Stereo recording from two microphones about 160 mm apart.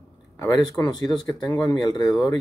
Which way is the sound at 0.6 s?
25° left (ahead or behind).